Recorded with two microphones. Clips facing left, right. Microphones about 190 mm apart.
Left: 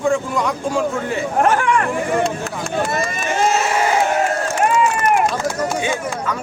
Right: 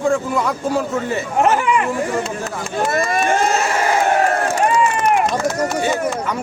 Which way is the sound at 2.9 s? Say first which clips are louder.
Right 4 dB; 55° right (ahead or behind).